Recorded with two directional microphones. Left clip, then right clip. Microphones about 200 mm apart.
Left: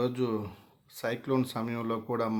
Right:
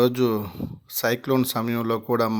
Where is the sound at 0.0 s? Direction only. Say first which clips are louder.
Right 10 dB; 35° right (ahead or behind).